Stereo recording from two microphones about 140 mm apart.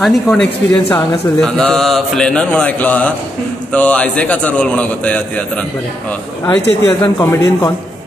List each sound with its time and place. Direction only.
0.0 s mantra: 5° left (ahead or behind)
6.4 s speech: 20° left (ahead or behind)